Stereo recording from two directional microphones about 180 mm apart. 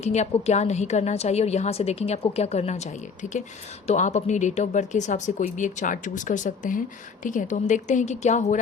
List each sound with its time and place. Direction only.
0.0 s a woman's voice: 40° left (ahead or behind)
3.8 s speech: 40° left (ahead or behind)